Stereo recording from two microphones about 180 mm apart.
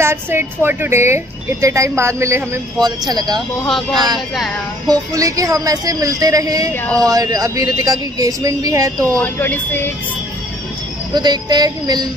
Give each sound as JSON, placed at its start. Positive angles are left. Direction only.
{"t": 0.0, "sound": "speech", "side_deg": -15}
{"t": 3.3, "sound": "speech", "side_deg": 0}
{"t": 4.8, "sound": "speech", "side_deg": -20}
{"t": 6.7, "sound": "speech", "side_deg": 10}
{"t": 7.1, "sound": "speech", "side_deg": -20}
{"t": 9.0, "sound": "speech", "side_deg": 10}
{"t": 11.1, "sound": "speech", "side_deg": -25}